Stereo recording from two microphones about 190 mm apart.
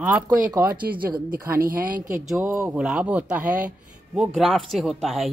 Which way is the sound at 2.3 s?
15° right (ahead or behind).